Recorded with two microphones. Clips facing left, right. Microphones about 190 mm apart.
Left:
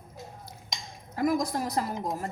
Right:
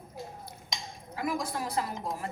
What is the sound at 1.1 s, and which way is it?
A woman's voice, 40° left (ahead or behind).